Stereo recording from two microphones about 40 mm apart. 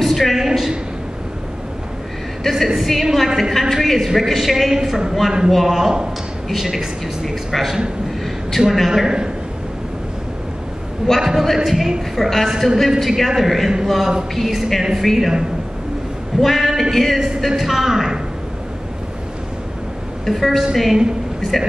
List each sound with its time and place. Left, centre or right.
0.0 s a sound: centre
2.6 s a woman's voice: centre
5.5 s a woman's voice: centre
7.2 s a woman's voice: centre
9.0 s a man's voice: centre
11.1 s a woman's voice: centre
16.3 s a woman's voice: centre
20.2 s a woman's voice: centre